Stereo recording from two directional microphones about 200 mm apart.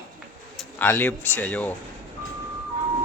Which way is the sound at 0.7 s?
10° left (ahead or behind).